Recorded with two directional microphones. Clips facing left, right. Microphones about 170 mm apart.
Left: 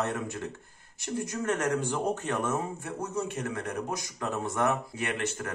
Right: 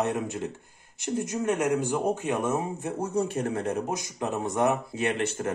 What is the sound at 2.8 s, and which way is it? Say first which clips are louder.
Speech: right 5 dB; 30° right (ahead or behind).